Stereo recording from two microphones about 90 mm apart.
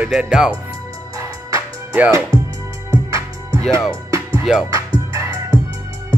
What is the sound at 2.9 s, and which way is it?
Music, 35° right (ahead or behind).